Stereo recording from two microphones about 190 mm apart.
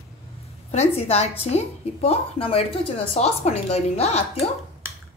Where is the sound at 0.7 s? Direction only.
35° left (ahead or behind).